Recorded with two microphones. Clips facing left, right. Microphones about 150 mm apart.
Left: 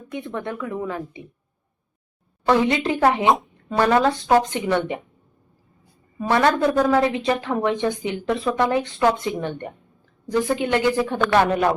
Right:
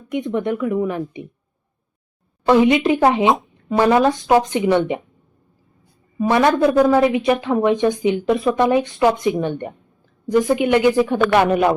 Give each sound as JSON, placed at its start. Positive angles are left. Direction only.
{"t": 0.1, "sound": "speech", "side_deg": -20}
{"t": 2.5, "sound": "speech", "side_deg": -15}
{"t": 6.1, "sound": "speech", "side_deg": -15}